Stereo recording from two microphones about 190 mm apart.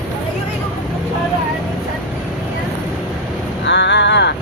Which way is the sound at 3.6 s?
70° left (ahead or behind).